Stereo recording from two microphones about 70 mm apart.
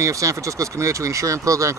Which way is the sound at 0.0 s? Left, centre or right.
Right.